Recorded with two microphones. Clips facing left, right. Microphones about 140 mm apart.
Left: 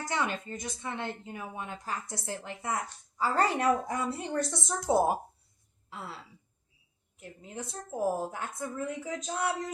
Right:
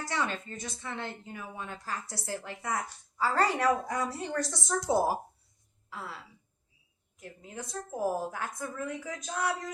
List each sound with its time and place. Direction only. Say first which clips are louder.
0.0 s a woman's voice: left 1 dB; 20° left (ahead or behind)
7.2 s a woman's voice: left 1 dB; 25° left (ahead or behind)